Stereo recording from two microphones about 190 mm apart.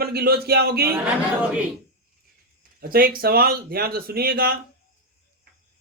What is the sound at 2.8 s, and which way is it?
Speech, 50° right (ahead or behind).